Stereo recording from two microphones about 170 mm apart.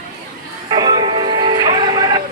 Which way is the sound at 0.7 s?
25° right (ahead or behind).